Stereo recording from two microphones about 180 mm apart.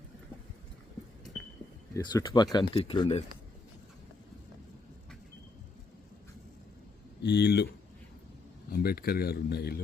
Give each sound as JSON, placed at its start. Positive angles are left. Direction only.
{"t": 1.9, "sound": "speech", "side_deg": 20}
{"t": 7.2, "sound": "speech", "side_deg": 70}
{"t": 8.7, "sound": "speech", "side_deg": 60}